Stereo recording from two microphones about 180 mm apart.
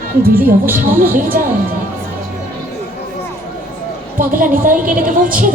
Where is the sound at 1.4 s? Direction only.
50° right (ahead or behind).